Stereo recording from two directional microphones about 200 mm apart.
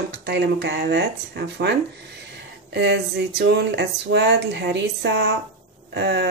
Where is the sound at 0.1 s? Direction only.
55° right (ahead or behind).